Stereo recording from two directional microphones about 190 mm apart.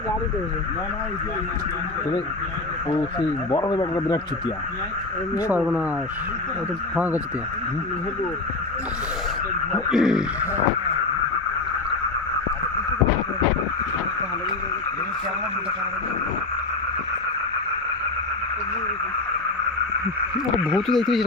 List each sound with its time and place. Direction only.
3.5 s speech: 20° left (ahead or behind)
5.5 s speech: 5° right (ahead or behind)
6.9 s speech: 10° right (ahead or behind)
9.7 s speech: centre (ahead or behind)
20.7 s speech: centre (ahead or behind)